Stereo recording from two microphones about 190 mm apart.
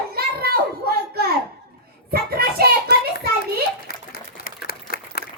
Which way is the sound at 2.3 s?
55° right (ahead or behind).